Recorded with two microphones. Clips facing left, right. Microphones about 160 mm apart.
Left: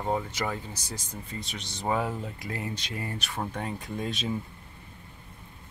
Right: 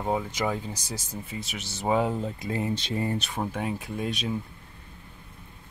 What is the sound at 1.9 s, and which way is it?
Speech, 20° right (ahead or behind).